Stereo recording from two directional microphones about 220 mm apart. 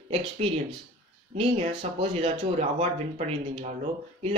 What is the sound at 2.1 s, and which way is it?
Speech, 30° right (ahead or behind).